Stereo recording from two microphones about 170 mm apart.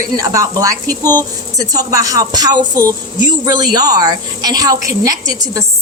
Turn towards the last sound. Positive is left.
turn(degrees=-20)  # may be behind; listen again after turning